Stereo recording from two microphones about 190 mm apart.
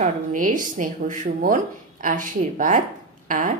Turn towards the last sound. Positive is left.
turn(degrees=-45)  # may be behind; listen again after turning